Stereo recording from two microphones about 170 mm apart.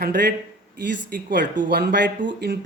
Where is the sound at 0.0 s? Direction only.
70° right (ahead or behind).